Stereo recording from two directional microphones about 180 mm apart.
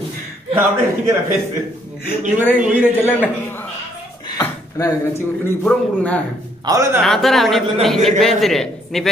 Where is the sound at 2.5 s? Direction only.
5° right (ahead or behind).